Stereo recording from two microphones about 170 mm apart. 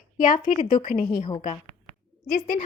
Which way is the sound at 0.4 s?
55° left (ahead or behind).